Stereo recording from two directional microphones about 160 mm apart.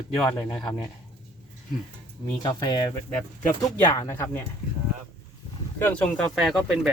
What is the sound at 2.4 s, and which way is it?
Speech, 25° left (ahead or behind).